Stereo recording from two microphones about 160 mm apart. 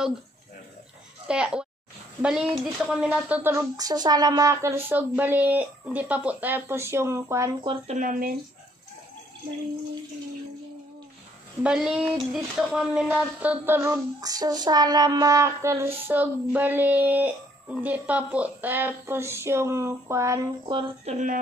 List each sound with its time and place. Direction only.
1.2 s a child's voice: 5° right (ahead or behind)
2.2 s a sound: 5° right (ahead or behind)
7.6 s speech: 35° right (ahead or behind)
7.9 s speech: 55° right (ahead or behind)
11.6 s a sound: 5° right (ahead or behind)
20.7 s speech: 45° right (ahead or behind)